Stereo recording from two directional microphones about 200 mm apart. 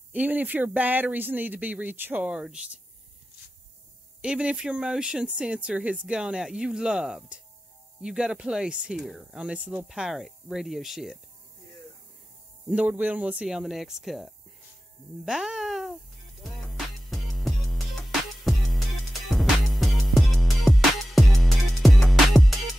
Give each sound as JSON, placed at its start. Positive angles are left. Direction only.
{"t": 0.1, "sound": "speech", "side_deg": -10}
{"t": 4.2, "sound": "speech", "side_deg": -5}
{"t": 12.6, "sound": "speech", "side_deg": -5}
{"t": 16.4, "sound": "music", "side_deg": 0}